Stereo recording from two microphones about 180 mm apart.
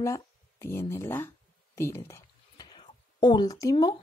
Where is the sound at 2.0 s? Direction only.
20° left (ahead or behind).